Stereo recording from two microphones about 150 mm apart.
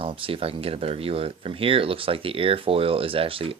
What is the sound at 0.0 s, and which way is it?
Speech, 35° right (ahead or behind).